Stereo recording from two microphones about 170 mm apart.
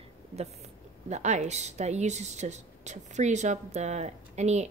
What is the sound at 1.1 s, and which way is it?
Speech, 45° right (ahead or behind).